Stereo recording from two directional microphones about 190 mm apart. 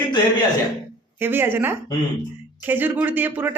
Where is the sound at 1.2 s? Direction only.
10° right (ahead or behind).